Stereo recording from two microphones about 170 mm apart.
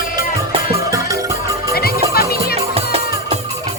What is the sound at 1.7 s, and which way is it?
Music, 65° left (ahead or behind).